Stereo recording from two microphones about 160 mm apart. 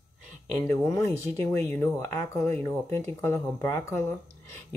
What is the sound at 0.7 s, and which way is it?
Speech, 15° left (ahead or behind).